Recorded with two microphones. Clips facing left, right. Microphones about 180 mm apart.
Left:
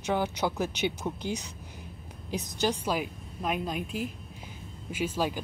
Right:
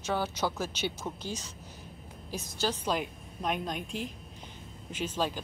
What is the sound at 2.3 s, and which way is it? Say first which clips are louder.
A woman's voice: left 4 dB; 15° left (ahead or behind).